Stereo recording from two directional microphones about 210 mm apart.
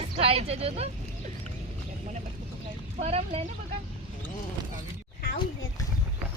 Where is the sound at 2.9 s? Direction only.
30° right (ahead or behind).